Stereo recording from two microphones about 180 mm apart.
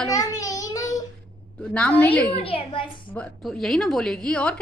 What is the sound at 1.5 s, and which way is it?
Speech, 5° left (ahead or behind).